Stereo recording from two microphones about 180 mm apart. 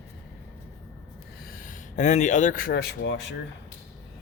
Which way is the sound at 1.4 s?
50° left (ahead or behind).